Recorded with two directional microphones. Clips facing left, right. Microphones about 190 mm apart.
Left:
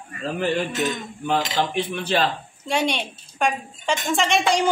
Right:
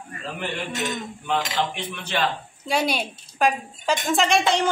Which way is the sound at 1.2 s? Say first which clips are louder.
Left 3 dB; 35° left (ahead or behind).